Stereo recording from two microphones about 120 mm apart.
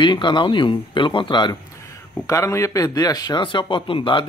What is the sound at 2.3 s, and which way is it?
A man's voice, 25° left (ahead or behind).